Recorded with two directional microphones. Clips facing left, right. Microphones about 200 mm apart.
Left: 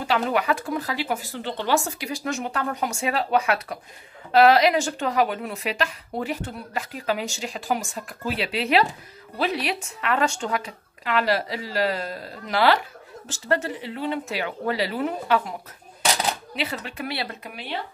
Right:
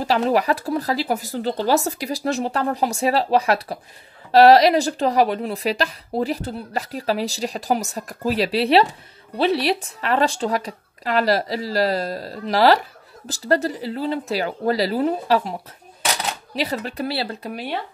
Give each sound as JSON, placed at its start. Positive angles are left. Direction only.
{"t": 0.0, "sound": "speech", "side_deg": -35}
{"t": 16.5, "sound": "speech", "side_deg": -40}